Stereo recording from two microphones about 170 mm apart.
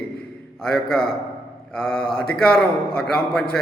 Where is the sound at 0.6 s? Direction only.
5° left (ahead or behind).